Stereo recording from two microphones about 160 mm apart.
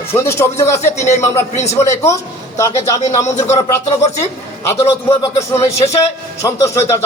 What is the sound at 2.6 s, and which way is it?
Speech, 20° left (ahead or behind).